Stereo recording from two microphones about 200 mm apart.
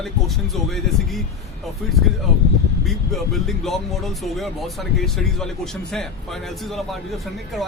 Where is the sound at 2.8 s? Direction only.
Centre (ahead or behind).